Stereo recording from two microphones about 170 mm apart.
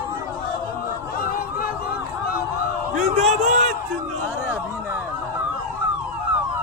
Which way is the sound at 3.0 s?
40° right (ahead or behind).